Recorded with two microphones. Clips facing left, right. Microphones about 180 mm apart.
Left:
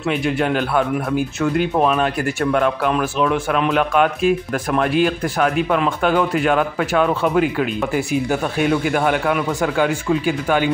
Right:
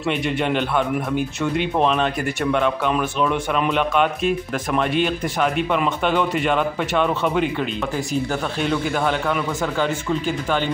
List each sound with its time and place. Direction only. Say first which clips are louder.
0.1 s speech: left 2 dB; 5° left (ahead or behind)